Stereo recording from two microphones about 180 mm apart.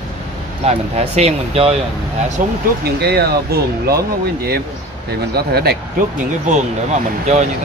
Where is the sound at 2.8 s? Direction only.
60° right (ahead or behind).